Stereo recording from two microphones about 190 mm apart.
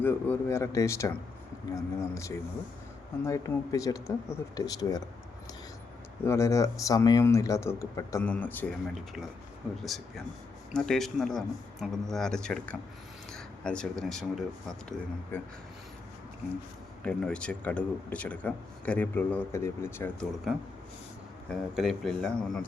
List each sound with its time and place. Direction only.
0.0 s a man's voice: 10° left (ahead or behind)
6.2 s a man's voice: 15° left (ahead or behind)
9.8 s speech: centre (ahead or behind)
17.0 s a man's voice: 5° left (ahead or behind)
21.8 s speech: centre (ahead or behind)